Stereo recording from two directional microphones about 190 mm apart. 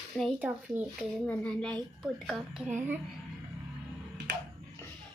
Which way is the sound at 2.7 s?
10° right (ahead or behind).